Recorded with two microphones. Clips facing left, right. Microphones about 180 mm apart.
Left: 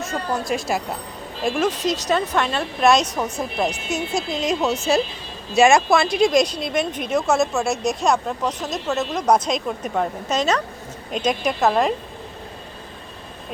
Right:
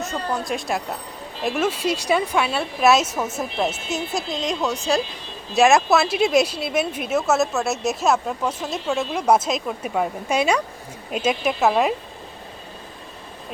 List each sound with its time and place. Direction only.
0.0 s speech: centre (ahead or behind)